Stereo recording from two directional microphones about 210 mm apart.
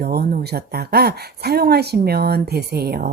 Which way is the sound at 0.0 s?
50° right (ahead or behind).